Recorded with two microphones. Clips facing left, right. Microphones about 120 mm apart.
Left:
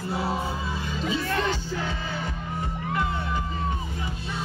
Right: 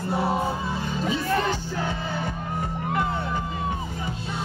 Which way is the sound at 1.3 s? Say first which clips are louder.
Right 2 dB; 10° right (ahead or behind).